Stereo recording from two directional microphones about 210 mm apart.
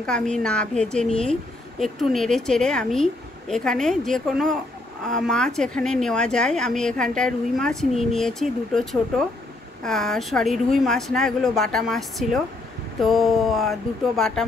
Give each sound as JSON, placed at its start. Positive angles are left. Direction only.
{"t": 0.0, "sound": "a woman's voice", "side_deg": 5}
{"t": 9.8, "sound": "a woman's voice", "side_deg": 0}